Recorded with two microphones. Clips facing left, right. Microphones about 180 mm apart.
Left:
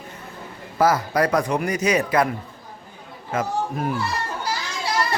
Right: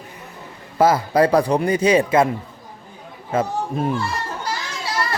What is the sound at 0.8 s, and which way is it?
Speech, 25° right (ahead or behind).